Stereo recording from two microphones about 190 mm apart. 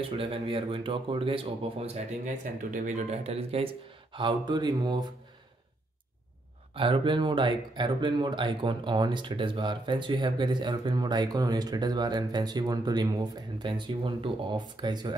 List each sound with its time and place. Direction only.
0.0 s speech: 30° right (ahead or behind)
6.7 s speech: 25° right (ahead or behind)